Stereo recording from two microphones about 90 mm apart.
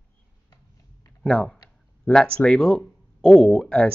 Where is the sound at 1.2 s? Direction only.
10° left (ahead or behind).